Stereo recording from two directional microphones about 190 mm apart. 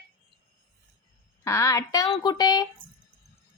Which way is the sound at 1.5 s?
15° left (ahead or behind).